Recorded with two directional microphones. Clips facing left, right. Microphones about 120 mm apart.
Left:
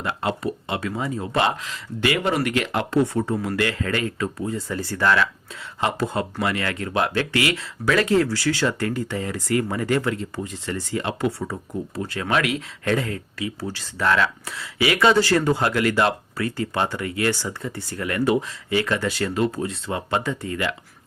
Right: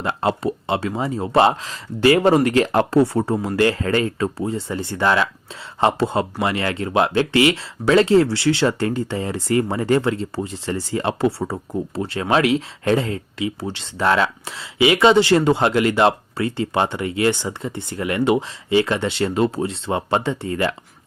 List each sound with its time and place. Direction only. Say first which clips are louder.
0.0 s speech: right 4 dB; 30° right (ahead or behind)